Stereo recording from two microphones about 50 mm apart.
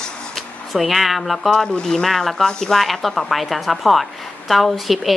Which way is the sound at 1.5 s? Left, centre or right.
Centre.